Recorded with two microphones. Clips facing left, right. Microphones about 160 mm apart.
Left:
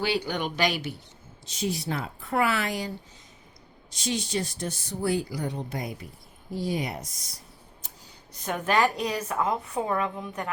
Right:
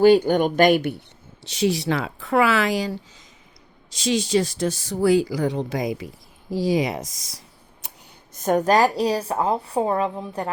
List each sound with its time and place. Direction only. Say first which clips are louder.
0.0 s speech: right 13 dB; 50° right (ahead or behind)
1.5 s speech: right 8 dB; 80° right
8.3 s a woman's voice: right 9 dB; 45° right (ahead or behind)